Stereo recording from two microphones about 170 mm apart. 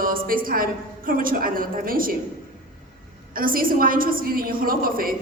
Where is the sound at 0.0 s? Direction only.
55° right (ahead or behind).